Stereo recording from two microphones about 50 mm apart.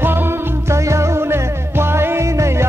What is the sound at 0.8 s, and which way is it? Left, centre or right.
Music, right.